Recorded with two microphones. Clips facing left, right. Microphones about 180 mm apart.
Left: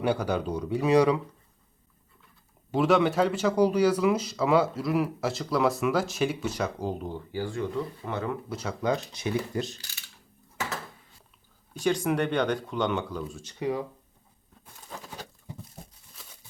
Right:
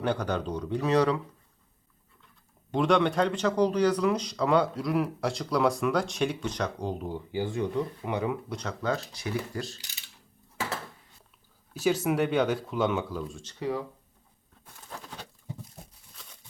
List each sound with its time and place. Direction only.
0.0 s speech: 10° left (ahead or behind)
2.7 s speech: 5° left (ahead or behind)
7.1 s speech: 20° right (ahead or behind)
8.4 s speech: 5° left (ahead or behind)
11.7 s speech: 5° right (ahead or behind)
13.4 s speech: 15° left (ahead or behind)
16.1 s a sound: 5° left (ahead or behind)